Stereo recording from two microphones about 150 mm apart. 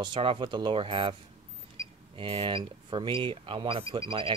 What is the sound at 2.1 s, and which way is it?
Speech, 35° right (ahead or behind).